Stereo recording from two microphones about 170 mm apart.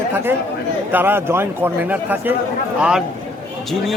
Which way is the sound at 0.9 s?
10° right (ahead or behind).